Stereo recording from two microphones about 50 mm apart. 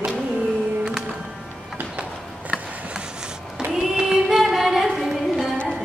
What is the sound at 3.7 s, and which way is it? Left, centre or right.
Singing, centre.